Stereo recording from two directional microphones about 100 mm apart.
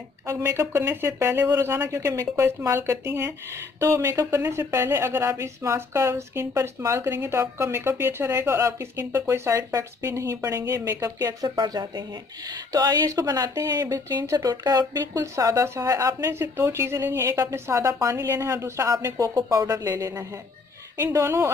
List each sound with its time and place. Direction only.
0.3 s speech: 30° right (ahead or behind)
11.4 s speech: 50° right (ahead or behind)